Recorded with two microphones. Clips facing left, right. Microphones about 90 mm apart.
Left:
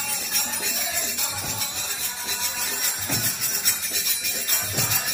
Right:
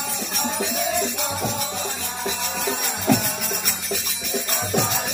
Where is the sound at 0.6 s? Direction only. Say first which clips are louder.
Right 9 dB; 45° right (ahead or behind).